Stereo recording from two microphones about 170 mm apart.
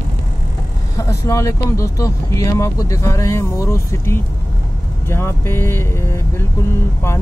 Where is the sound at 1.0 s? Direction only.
15° left (ahead or behind).